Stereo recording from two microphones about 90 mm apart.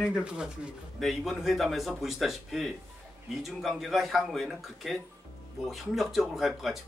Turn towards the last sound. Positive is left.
turn(degrees=-5)  # may be behind; listen again after turning